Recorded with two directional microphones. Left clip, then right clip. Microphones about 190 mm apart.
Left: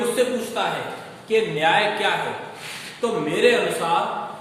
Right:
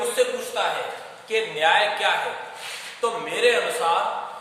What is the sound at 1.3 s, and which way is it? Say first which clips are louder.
Speech: left 1 dB; 10° right (ahead or behind).